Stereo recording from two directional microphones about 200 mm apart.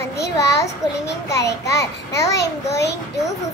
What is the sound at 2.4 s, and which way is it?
Speech, 55° left (ahead or behind).